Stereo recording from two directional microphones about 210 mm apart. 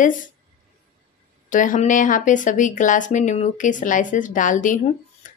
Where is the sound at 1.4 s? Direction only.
40° left (ahead or behind).